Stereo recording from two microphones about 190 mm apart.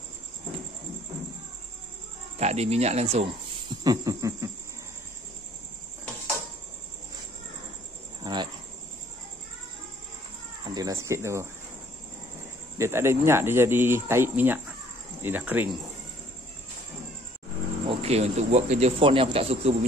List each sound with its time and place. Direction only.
2.3 s speech: 35° right (ahead or behind)
3.8 s a sound: 20° right (ahead or behind)
8.2 s cricket: 25° right (ahead or behind)
10.6 s speech: 20° right (ahead or behind)
12.7 s speech: 15° right (ahead or behind)
17.8 s speech: 35° right (ahead or behind)